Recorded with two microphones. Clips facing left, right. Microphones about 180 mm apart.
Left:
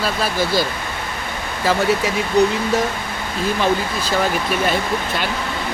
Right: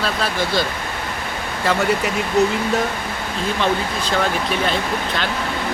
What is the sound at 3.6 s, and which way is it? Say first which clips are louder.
Speech: even; 5° left (ahead or behind).